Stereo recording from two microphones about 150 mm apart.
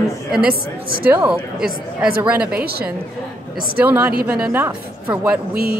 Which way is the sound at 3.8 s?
10° right (ahead or behind).